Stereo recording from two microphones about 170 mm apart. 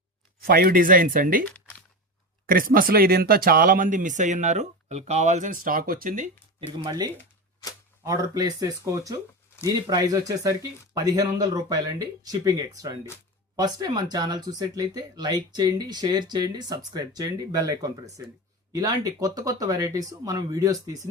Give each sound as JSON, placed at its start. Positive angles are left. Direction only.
{"t": 0.3, "sound": "speech", "side_deg": -60}
{"t": 2.5, "sound": "speech", "side_deg": -55}
{"t": 6.8, "sound": "speech", "side_deg": -20}